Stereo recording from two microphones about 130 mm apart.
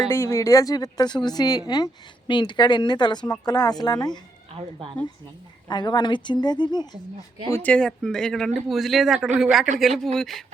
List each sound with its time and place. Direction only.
0.1 s speech: 20° left (ahead or behind)
4.5 s speech: 45° right (ahead or behind)
5.6 s speech: 35° left (ahead or behind)
7.5 s speech: 10° left (ahead or behind)